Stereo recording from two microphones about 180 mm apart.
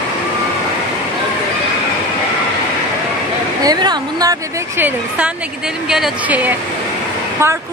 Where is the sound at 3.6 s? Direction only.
20° right (ahead or behind).